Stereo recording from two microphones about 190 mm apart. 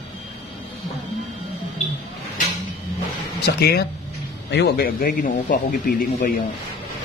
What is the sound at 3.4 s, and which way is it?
A man's voice, 55° left (ahead or behind).